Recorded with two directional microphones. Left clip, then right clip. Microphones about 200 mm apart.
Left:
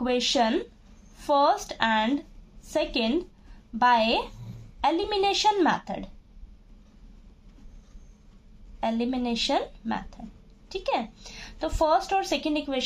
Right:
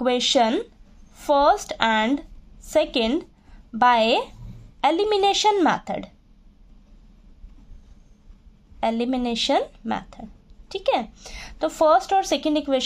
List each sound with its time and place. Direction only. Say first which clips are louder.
0.0 s a woman's voice: right 5 dB; 40° right (ahead or behind)
8.7 s a woman's voice: right 5 dB; 45° right (ahead or behind)